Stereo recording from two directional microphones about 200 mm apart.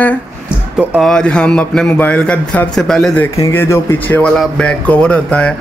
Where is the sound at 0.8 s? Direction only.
5° right (ahead or behind).